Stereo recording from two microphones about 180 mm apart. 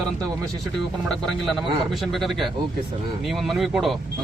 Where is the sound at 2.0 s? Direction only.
Centre (ahead or behind).